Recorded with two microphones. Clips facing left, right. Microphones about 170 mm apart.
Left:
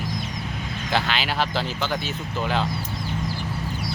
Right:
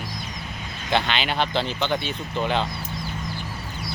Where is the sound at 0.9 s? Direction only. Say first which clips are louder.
Right 1 dB; 5° left (ahead or behind).